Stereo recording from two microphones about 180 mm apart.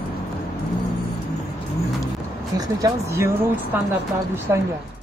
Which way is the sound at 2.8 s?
15° right (ahead or behind).